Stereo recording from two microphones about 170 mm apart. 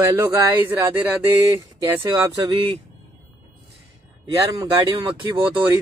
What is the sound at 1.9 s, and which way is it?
Speech, 15° right (ahead or behind).